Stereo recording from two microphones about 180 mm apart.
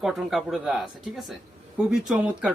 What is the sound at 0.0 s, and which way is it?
A man's voice, centre (ahead or behind).